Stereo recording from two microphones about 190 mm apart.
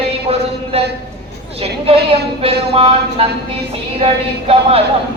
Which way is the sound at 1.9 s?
30° right (ahead or behind).